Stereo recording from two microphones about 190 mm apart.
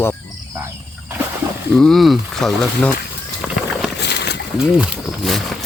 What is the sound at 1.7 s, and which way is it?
Speech, centre (ahead or behind).